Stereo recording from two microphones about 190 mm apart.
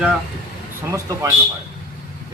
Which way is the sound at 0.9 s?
15° right (ahead or behind).